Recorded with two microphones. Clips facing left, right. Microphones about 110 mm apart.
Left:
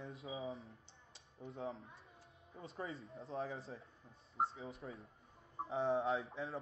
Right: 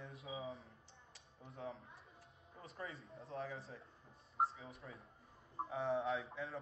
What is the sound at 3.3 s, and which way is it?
Speech, 30° left (ahead or behind).